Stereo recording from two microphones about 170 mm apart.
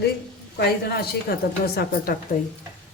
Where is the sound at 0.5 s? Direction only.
70° left (ahead or behind).